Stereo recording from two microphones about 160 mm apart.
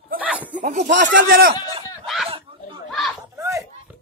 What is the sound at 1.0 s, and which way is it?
Speech, 60° right (ahead or behind).